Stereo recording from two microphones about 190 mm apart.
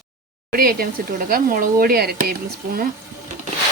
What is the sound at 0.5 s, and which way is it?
Speech, 50° right (ahead or behind).